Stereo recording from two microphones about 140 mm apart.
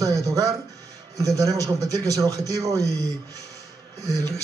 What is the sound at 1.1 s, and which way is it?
A man's voice, 25° right (ahead or behind).